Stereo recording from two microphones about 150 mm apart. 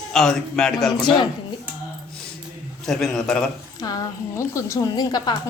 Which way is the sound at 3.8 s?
25° left (ahead or behind).